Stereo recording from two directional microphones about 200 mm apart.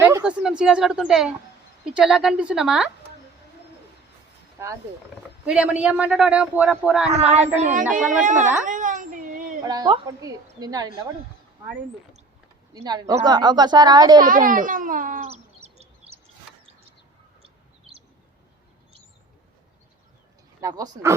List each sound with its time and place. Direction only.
0.0 s a sound: 5° right (ahead or behind)
0.6 s a man's voice: 5° right (ahead or behind)
5.5 s a man's voice: 5° right (ahead or behind)
7.6 s speech: 40° right (ahead or behind)
8.2 s a sound: 40° right (ahead or behind)
9.6 s a woman's voice: 20° right (ahead or behind)
12.7 s a woman's voice: 20° right (ahead or behind)
14.2 s speech: 40° right (ahead or behind)
20.6 s speech: 20° right (ahead or behind)